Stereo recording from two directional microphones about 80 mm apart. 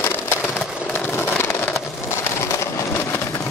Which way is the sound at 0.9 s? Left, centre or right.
Left.